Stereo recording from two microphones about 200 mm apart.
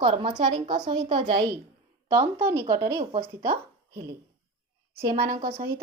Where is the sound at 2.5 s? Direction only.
15° right (ahead or behind).